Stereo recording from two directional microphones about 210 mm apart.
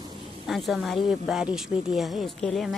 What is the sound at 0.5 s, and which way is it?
Speech, centre (ahead or behind).